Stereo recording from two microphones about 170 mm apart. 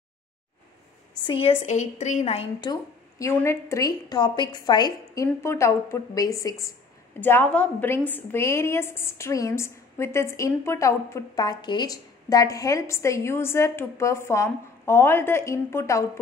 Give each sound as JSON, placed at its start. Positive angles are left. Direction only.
{"t": 1.2, "sound": "a woman's voice", "side_deg": 35}
{"t": 2.7, "sound": "a woman's voice", "side_deg": 15}